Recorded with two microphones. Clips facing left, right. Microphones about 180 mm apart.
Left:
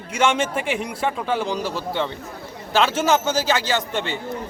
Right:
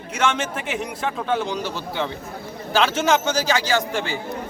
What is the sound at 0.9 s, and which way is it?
Speech, 10° left (ahead or behind).